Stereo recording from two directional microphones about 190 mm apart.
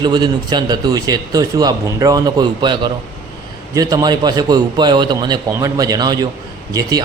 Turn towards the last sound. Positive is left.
turn(degrees=-20)  # may be behind; listen again after turning